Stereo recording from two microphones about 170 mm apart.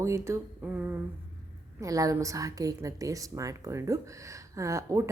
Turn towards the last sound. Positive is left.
turn(degrees=-20)  # may be behind; listen again after turning